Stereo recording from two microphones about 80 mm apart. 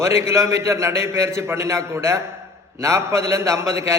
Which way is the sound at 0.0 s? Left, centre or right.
Right.